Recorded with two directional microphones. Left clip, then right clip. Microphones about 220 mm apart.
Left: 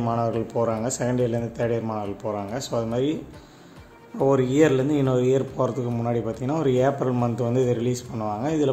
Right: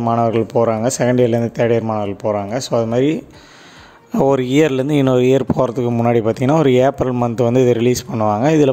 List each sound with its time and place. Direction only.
0.0 s speech: 35° right (ahead or behind)
4.2 s speech: 45° right (ahead or behind)